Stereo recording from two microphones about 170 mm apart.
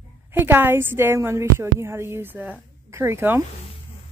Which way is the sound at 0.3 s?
10° right (ahead or behind).